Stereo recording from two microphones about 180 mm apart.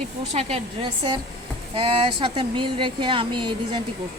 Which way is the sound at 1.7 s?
30° right (ahead or behind).